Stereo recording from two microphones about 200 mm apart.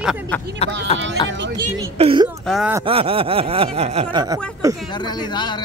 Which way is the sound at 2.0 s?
30° right (ahead or behind).